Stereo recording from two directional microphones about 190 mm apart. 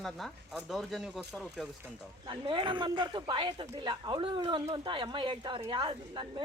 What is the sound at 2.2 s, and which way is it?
Speech, 25° right (ahead or behind).